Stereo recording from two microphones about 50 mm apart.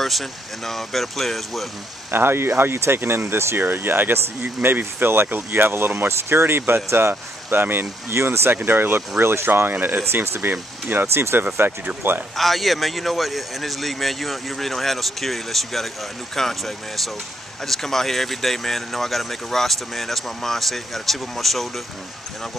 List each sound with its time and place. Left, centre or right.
0.0 s speech: centre
2.0 s speech: right
3.6 s speech: right
4.6 s speech: right
8.1 s speech: right
8.5 s speech: right
9.2 s speech: right
9.5 s speech: right
12.4 s speech: centre